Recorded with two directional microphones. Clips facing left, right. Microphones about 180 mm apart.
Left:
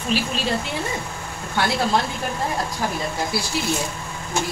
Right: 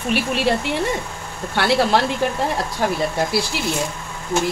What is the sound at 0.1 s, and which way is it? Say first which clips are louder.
Speech: right 4 dB; 65° right (ahead or behind).